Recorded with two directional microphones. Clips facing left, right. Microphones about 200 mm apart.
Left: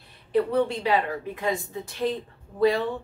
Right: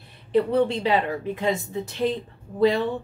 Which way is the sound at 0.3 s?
25° right (ahead or behind).